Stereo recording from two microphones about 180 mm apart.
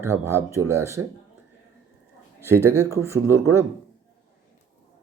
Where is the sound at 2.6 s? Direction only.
15° right (ahead or behind).